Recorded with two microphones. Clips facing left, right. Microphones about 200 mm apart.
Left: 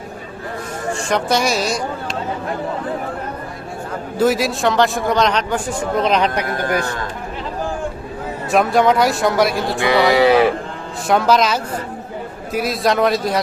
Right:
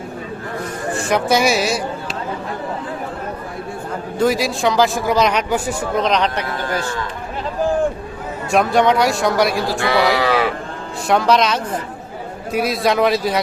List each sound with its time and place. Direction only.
1.1 s a man's voice: 5° right (ahead or behind)
4.2 s a man's voice: centre (ahead or behind)
6.0 s speech: 5° left (ahead or behind)
6.4 s speech: 50° left (ahead or behind)
8.4 s a man's voice: centre (ahead or behind)
9.7 s speech: 20° left (ahead or behind)
10.2 s a sound: 20° left (ahead or behind)
11.1 s a man's voice: centre (ahead or behind)